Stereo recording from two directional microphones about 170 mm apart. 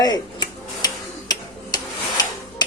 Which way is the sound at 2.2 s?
25° left (ahead or behind).